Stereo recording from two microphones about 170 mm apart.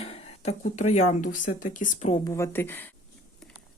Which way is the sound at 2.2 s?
15° left (ahead or behind).